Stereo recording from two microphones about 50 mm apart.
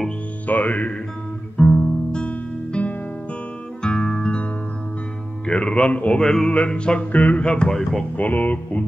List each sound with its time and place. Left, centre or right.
0.5 s music: left
1.6 s guitar: centre
2.2 s music: left
5.5 s speech: left
6.2 s music: centre
6.5 s speech: left
7.1 s speech: left
8.2 s speech: left